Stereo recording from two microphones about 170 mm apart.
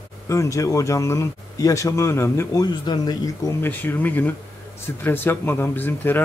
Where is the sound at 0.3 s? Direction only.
20° left (ahead or behind).